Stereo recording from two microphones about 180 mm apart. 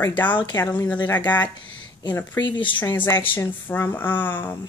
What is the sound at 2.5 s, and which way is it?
Speech, 25° left (ahead or behind).